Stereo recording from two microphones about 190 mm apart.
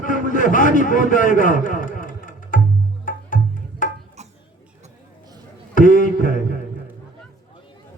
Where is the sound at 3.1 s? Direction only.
45° left (ahead or behind).